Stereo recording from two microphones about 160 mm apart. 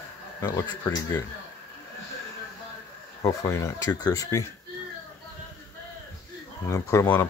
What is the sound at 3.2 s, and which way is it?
Speech, 20° left (ahead or behind).